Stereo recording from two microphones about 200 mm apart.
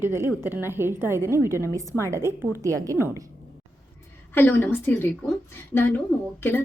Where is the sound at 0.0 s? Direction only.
10° right (ahead or behind).